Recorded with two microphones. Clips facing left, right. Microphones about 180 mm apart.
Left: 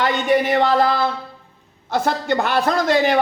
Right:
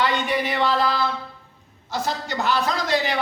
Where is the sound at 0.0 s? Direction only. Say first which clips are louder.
Left 5 dB; 50° left (ahead or behind).